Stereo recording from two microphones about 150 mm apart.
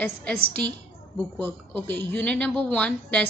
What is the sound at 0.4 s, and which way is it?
Speech, 90° right.